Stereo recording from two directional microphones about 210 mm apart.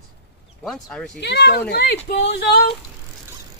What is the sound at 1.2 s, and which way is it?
A child's voice, 50° left (ahead or behind).